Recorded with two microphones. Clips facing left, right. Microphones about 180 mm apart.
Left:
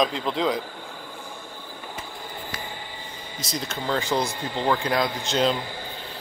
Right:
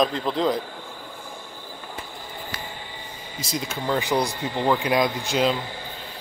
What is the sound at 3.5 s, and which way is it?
Speech, 10° right (ahead or behind).